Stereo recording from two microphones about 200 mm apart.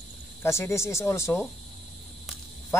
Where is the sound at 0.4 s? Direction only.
15° left (ahead or behind).